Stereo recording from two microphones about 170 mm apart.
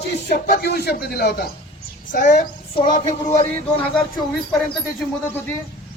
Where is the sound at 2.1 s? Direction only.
50° left (ahead or behind).